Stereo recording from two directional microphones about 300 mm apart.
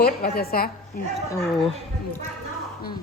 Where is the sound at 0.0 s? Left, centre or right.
Left.